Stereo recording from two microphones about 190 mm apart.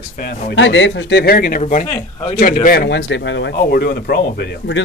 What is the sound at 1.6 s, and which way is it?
Speech, 40° left (ahead or behind).